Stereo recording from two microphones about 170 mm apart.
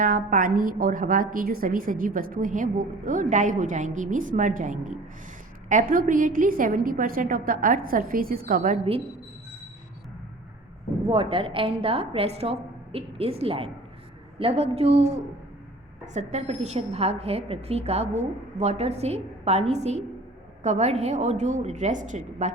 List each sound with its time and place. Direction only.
0.0 s a woman's voice: 55° right (ahead or behind)
11.1 s a woman's voice: 30° right (ahead or behind)
16.1 s a woman's voice: 40° right (ahead or behind)